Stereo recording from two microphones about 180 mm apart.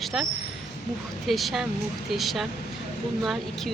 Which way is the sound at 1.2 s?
Centre (ahead or behind).